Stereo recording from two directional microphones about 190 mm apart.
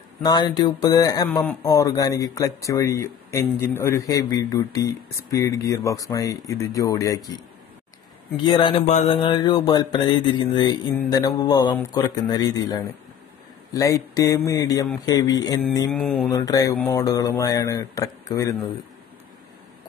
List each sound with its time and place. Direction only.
0.2 s speech: 20° left (ahead or behind)
8.4 s speech: 25° left (ahead or behind)
15.9 s speech: 5° left (ahead or behind)
16.3 s speech: 20° left (ahead or behind)